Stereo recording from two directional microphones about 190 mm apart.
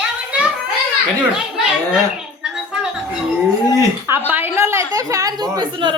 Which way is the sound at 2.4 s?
5° right (ahead or behind).